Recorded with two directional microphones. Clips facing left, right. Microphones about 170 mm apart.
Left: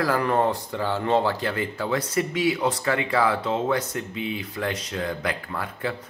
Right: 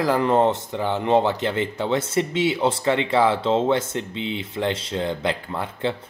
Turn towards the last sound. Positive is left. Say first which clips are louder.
# right 4 dB
turn(degrees=-25)  # may be behind; listen again after turning